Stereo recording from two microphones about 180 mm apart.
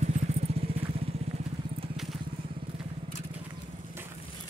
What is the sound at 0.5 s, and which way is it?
Vehicle, 35° right (ahead or behind).